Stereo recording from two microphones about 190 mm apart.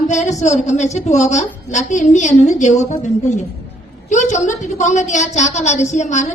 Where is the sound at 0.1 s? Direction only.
40° left (ahead or behind).